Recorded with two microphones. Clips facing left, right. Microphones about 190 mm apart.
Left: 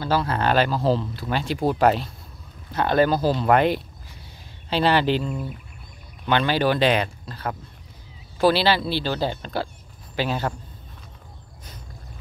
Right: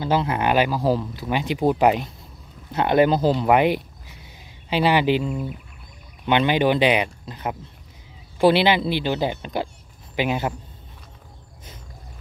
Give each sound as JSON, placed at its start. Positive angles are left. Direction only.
{"t": 0.0, "sound": "speech", "side_deg": -20}